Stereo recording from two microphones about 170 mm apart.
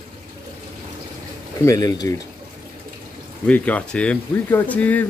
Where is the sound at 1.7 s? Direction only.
20° left (ahead or behind).